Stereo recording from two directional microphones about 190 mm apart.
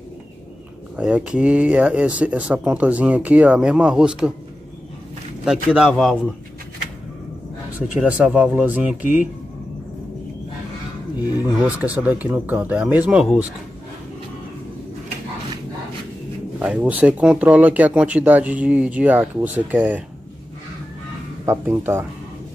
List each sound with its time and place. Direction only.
0.9 s speech: 5° right (ahead or behind)
5.4 s speech: centre (ahead or behind)
7.9 s speech: 10° right (ahead or behind)
11.3 s speech: 10° right (ahead or behind)
16.5 s speech: 10° right (ahead or behind)
21.5 s speech: 10° right (ahead or behind)